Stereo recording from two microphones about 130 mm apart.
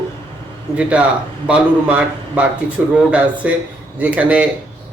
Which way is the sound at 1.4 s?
10° right (ahead or behind).